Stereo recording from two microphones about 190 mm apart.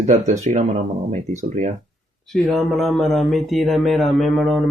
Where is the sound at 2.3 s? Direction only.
Centre (ahead or behind).